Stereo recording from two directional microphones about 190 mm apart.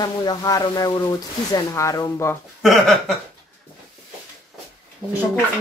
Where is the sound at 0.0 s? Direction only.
20° left (ahead or behind).